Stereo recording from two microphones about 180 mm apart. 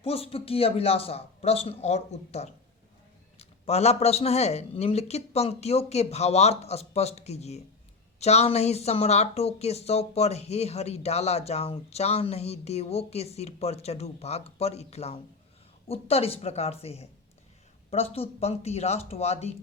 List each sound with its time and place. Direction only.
0.0 s speech: 30° left (ahead or behind)